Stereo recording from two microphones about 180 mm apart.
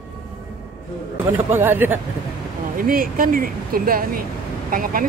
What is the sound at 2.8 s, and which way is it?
Speech, 50° right (ahead or behind).